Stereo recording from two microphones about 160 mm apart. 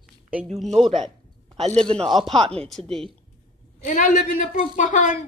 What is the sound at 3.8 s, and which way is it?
A woman's voice, 55° left (ahead or behind).